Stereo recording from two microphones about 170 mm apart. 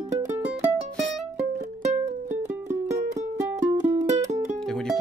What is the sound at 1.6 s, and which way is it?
Music, 45° right (ahead or behind).